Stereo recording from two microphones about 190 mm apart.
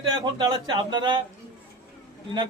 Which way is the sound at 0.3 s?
25° right (ahead or behind).